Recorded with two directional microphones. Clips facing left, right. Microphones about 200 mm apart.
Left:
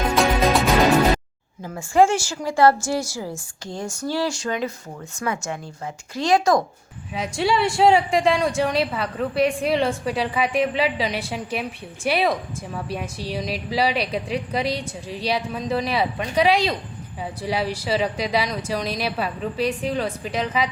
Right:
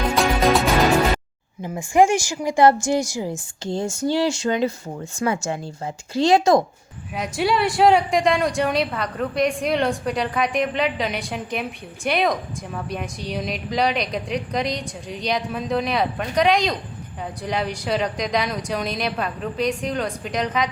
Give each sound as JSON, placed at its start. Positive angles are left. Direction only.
{"t": 0.2, "sound": "music", "side_deg": 0}
{"t": 1.6, "sound": "a woman's voice", "side_deg": -15}
{"t": 7.1, "sound": "a woman's voice", "side_deg": 0}